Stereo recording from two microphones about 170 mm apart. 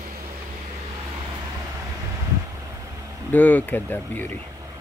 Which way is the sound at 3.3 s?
10° left (ahead or behind).